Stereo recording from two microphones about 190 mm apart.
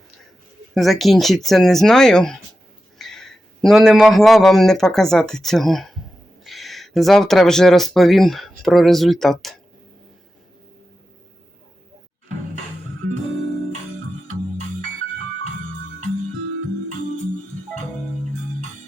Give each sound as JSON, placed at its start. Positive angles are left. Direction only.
{"t": 0.7, "sound": "speech", "side_deg": 0}